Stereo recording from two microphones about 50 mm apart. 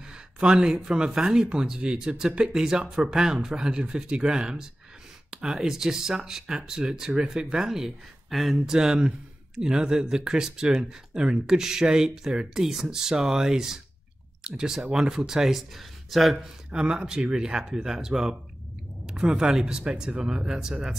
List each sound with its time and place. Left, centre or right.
0.1 s speech: centre
16.7 s speech: centre